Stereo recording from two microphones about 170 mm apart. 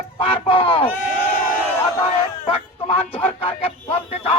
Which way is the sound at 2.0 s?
35° left (ahead or behind).